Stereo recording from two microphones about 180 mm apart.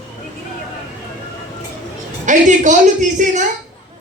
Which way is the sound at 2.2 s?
45° right (ahead or behind).